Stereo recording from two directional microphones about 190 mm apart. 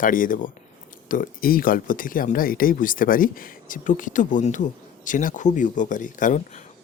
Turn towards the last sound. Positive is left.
turn(degrees=45)  # may be behind; listen again after turning